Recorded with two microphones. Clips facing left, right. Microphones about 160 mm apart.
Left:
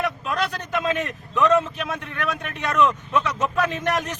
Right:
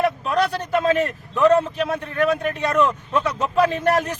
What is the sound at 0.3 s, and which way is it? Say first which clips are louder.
A man's voice: right 5 dB; 35° right (ahead or behind).